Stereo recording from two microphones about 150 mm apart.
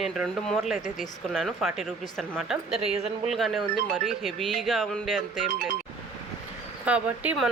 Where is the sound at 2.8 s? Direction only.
45° right (ahead or behind).